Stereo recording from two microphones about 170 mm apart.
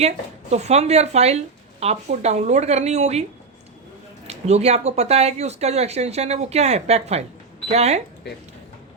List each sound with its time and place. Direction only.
0.5 s speech: 40° right (ahead or behind)
4.3 s speech: 40° right (ahead or behind)